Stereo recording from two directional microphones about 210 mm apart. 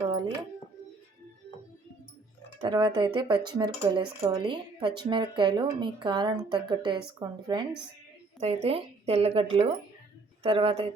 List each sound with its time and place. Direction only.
0.1 s a sound: 25° right (ahead or behind)
2.6 s speech: 20° right (ahead or behind)
8.4 s speech: 30° right (ahead or behind)